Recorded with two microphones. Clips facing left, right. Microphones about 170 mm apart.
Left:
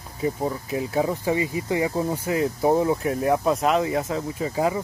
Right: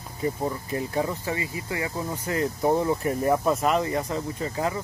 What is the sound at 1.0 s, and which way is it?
Speech, 20° left (ahead or behind).